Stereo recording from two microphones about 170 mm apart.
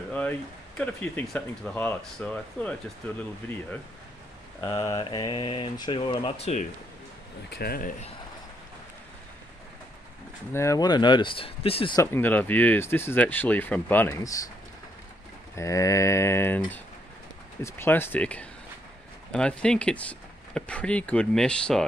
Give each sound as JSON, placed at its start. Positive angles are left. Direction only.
{"t": 0.1, "sound": "speech", "side_deg": 10}
{"t": 4.6, "sound": "speech", "side_deg": 20}
{"t": 7.4, "sound": "speech", "side_deg": 70}
{"t": 10.5, "sound": "speech", "side_deg": 15}
{"t": 12.0, "sound": "speech", "side_deg": 15}
{"t": 15.5, "sound": "speech", "side_deg": 20}